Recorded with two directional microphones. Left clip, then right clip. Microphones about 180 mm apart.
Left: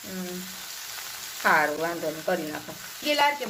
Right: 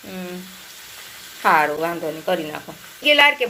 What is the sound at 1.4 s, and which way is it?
Speech, 15° right (ahead or behind).